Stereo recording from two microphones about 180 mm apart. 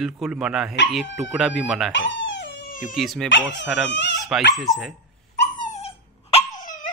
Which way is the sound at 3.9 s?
75° left (ahead or behind).